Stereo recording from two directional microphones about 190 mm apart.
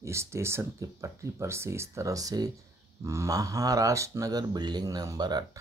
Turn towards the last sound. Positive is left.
turn(degrees=-20)  # may be behind; listen again after turning